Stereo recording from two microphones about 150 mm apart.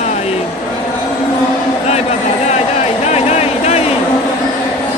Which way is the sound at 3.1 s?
50° left (ahead or behind).